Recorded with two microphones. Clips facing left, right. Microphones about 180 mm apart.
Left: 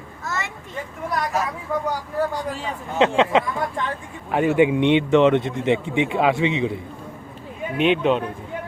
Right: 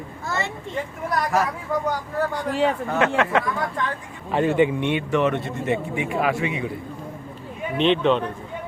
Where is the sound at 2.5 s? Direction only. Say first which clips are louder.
Right 7 dB; 65° right (ahead or behind).